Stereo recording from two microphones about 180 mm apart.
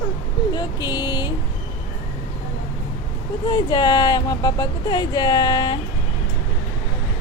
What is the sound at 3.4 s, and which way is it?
Speech, 25° left (ahead or behind).